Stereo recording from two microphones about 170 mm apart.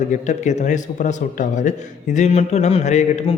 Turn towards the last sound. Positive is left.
turn(degrees=40)  # may be behind; listen again after turning